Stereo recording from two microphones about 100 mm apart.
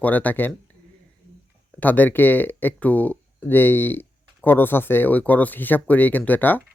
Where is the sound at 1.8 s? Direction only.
15° left (ahead or behind).